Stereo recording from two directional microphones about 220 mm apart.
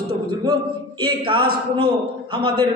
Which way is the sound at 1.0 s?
20° right (ahead or behind).